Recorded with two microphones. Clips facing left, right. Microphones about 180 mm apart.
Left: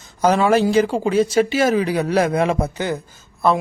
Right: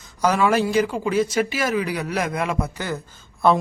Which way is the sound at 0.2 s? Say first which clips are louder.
Left 4 dB; 25° left (ahead or behind).